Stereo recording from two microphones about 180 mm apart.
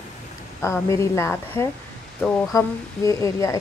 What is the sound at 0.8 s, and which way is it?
A woman's voice, 15° left (ahead or behind).